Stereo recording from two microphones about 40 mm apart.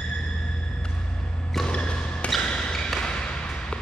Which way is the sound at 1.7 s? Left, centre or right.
Left.